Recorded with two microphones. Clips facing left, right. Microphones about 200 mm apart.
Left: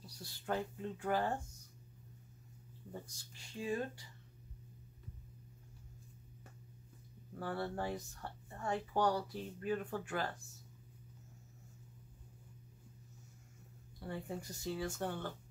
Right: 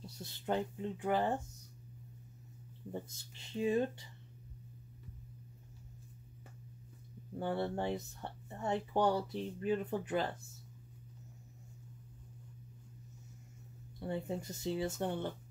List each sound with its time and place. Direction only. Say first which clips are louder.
0.0 s speech: right 5 dB; 20° right (ahead or behind)
2.9 s speech: right 6 dB; 20° right (ahead or behind)
7.3 s speech: right 4 dB; 25° right (ahead or behind)
13.9 s speech: right 5 dB; 20° right (ahead or behind)